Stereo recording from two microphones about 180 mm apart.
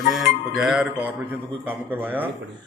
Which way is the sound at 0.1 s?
Centre (ahead or behind).